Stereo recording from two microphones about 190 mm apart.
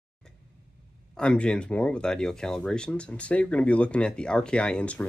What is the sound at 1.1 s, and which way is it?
Speech, 5° left (ahead or behind).